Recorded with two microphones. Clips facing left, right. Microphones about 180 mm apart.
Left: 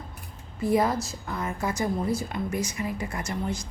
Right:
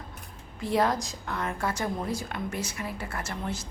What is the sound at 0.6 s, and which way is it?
A woman's voice, 10° left (ahead or behind).